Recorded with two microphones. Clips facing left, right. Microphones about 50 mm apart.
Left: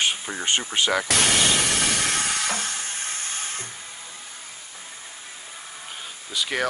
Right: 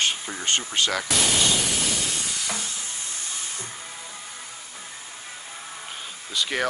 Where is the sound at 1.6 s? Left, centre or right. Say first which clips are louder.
Left 3 dB; left.